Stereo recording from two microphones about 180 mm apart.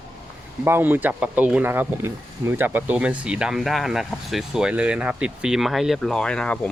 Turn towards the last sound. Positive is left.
turn(degrees=5)  # may be behind; listen again after turning